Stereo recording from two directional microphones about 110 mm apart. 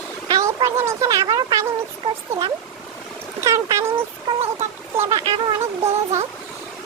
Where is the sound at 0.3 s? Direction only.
30° right (ahead or behind).